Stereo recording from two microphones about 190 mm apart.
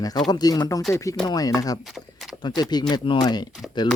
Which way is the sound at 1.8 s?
Centre (ahead or behind).